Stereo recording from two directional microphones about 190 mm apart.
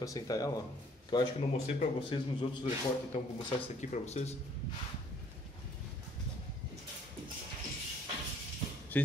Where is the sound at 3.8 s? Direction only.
35° left (ahead or behind).